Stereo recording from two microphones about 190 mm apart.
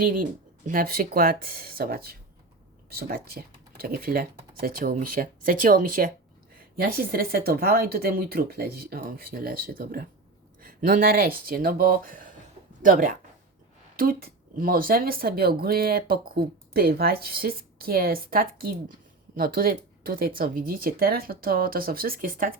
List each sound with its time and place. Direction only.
0.0 s speech: 50° right (ahead or behind)